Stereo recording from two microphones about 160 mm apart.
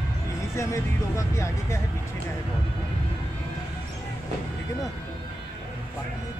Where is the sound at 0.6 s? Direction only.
20° left (ahead or behind).